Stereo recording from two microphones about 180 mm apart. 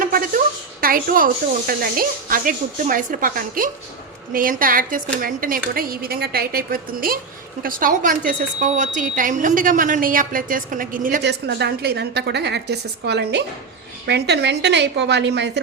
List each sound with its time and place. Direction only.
0.0 s a woman's voice: 50° right (ahead or behind)
11.2 s a woman's voice: 70° right (ahead or behind)